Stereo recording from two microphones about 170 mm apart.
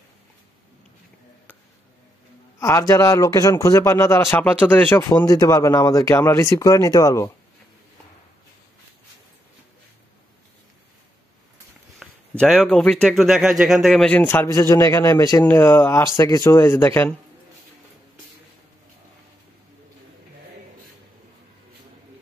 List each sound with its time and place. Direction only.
2.6 s speech: 15° left (ahead or behind)
5.1 s speech: 20° left (ahead or behind)
12.0 s speech: centre (ahead or behind)